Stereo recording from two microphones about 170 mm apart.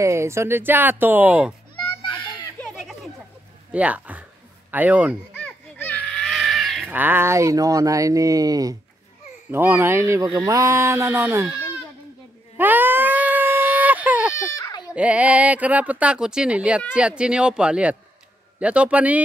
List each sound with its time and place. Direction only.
0.0 s speech: 15° right (ahead or behind)
2.0 s children playing: 25° left (ahead or behind)
2.6 s a sound: centre (ahead or behind)
5.4 s a sound: 10° left (ahead or behind)
6.9 s speech: 10° right (ahead or behind)
12.5 s baby cry: 10° right (ahead or behind)
14.3 s baby cry: 20° left (ahead or behind)
15.0 s speech: 10° right (ahead or behind)